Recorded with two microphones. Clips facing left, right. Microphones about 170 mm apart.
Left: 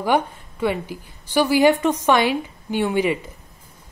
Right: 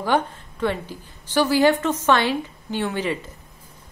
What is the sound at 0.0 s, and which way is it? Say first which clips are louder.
A woman's voice: left 2 dB; 10° left (ahead or behind).